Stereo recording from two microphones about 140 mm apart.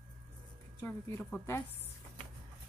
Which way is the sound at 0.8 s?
15° left (ahead or behind).